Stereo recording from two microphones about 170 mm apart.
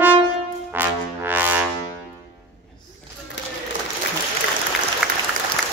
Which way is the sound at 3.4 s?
90° left.